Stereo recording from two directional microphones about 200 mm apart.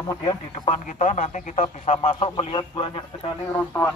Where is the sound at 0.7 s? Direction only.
40° left (ahead or behind).